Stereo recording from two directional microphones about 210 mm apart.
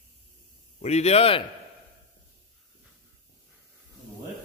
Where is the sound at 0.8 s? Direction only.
30° left (ahead or behind).